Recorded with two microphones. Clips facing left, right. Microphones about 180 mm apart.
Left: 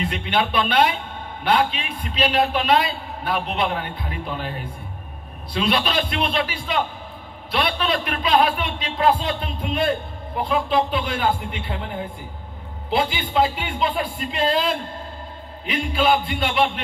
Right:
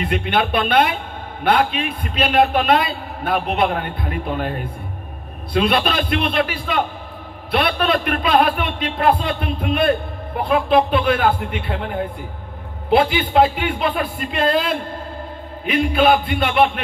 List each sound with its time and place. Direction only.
0.0 s speech: 55° right (ahead or behind)